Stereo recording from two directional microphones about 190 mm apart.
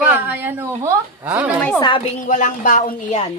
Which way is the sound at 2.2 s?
40° left (ahead or behind).